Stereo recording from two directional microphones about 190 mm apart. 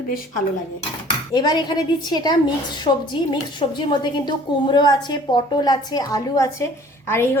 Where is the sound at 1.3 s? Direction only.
20° left (ahead or behind).